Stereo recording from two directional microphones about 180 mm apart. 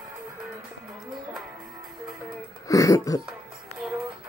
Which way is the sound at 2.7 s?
20° left (ahead or behind).